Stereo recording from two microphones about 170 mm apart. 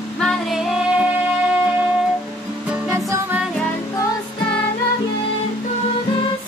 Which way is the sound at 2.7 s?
10° right (ahead or behind).